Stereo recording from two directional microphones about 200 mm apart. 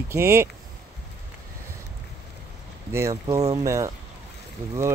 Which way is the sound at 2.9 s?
15° right (ahead or behind).